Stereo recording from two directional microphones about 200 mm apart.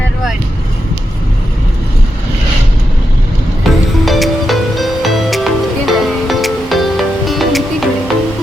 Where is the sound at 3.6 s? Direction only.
Centre (ahead or behind).